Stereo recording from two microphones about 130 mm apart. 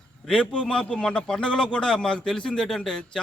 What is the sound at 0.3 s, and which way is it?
A man's voice, 5° left (ahead or behind).